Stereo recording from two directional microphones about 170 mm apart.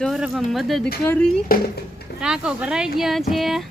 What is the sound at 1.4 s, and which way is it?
Speech, 60° left (ahead or behind).